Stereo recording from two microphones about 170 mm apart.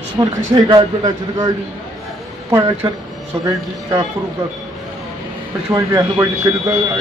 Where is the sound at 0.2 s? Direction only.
25° right (ahead or behind).